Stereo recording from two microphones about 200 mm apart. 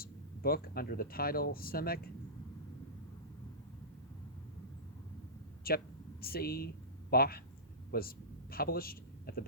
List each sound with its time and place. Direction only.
0.0 s speech: 50° left (ahead or behind)
5.7 s speech: 50° left (ahead or behind)
7.9 s a sound: 50° left (ahead or behind)